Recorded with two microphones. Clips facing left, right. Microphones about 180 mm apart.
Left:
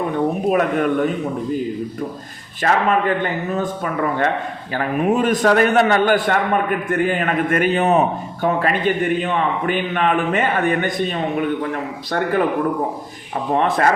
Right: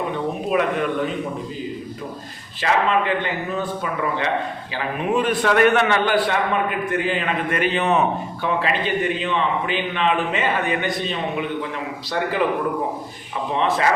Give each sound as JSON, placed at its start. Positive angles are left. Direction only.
{"t": 0.5, "sound": "a man's voice", "side_deg": 45}
{"t": 2.6, "sound": "a man's voice", "side_deg": 45}
{"t": 13.5, "sound": "a man's voice", "side_deg": 50}